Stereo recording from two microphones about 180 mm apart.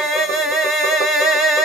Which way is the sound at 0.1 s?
Centre (ahead or behind).